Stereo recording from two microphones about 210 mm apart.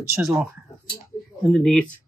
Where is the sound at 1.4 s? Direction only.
5° left (ahead or behind).